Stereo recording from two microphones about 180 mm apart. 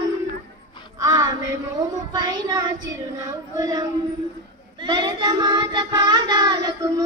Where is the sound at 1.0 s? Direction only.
20° right (ahead or behind).